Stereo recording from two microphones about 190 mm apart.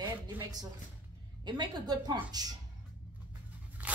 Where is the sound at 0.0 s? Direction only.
20° right (ahead or behind).